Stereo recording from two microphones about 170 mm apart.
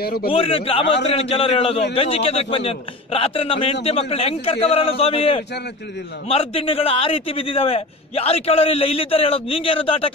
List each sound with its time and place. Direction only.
0.0 s a man's voice: 65° left (ahead or behind)
0.3 s a man's voice: 35° left (ahead or behind)